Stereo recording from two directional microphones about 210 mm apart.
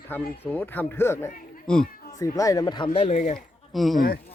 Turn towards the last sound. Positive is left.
turn(degrees=45)  # may be behind; listen again after turning